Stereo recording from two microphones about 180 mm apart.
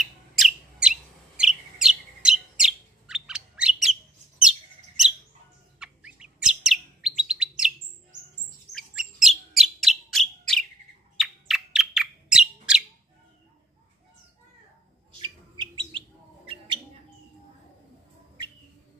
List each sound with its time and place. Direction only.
0.0 s bird: 5° right (ahead or behind)
7.2 s chirp: 5° right (ahead or behind)
8.7 s bird: centre (ahead or behind)
15.1 s bird: 25° right (ahead or behind)